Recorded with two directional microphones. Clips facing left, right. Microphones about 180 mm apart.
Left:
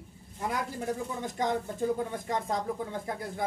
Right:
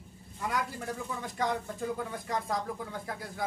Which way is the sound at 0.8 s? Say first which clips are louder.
Left 4 dB; 20° left (ahead or behind).